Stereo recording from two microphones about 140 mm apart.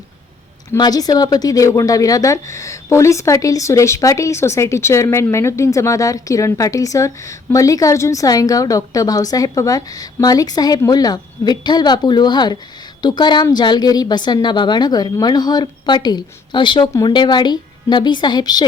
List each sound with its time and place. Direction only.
0.8 s a woman's voice: 25° left (ahead or behind)